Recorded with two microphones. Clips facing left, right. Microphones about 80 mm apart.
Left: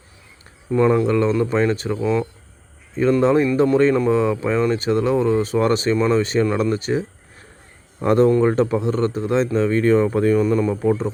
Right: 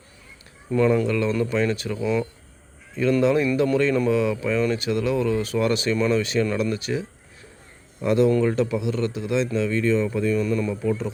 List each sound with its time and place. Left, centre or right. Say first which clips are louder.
0.7 s speech: left 3 dB; centre
1.0 s speech: left 5 dB; left